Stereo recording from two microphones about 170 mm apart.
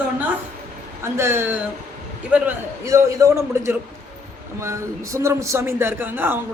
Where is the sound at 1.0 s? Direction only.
15° right (ahead or behind).